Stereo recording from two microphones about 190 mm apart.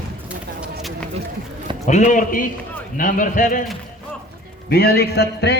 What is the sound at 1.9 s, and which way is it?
A man's voice, 40° left (ahead or behind).